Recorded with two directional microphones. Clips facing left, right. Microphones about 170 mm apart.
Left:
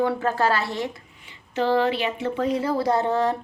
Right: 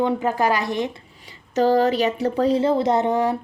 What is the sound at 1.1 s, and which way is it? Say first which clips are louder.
Speech: right 6 dB; 35° right (ahead or behind).